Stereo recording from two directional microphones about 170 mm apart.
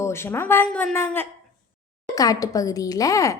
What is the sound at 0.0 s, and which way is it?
A woman's voice, 15° left (ahead or behind).